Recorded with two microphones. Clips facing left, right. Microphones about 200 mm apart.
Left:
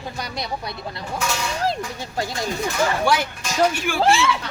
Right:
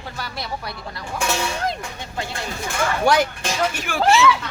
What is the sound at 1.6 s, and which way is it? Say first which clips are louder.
Speech: left 2 dB; 35° left (ahead or behind).